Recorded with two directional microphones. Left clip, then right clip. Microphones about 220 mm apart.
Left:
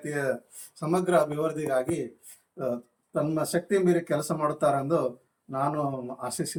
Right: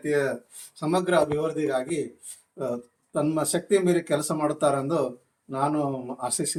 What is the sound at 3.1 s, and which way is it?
Speech, 10° right (ahead or behind).